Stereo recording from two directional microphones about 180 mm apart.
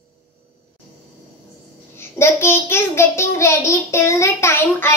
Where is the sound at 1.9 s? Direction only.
15° left (ahead or behind).